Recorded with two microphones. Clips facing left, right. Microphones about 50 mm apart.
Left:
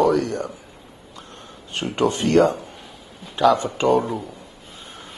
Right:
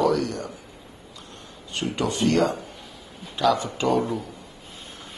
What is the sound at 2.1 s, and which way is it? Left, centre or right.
Speech, left.